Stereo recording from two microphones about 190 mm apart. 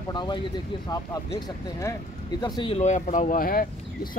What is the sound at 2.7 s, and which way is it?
Speech, 40° left (ahead or behind).